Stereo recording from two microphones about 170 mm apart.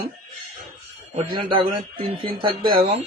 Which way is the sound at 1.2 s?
30° right (ahead or behind).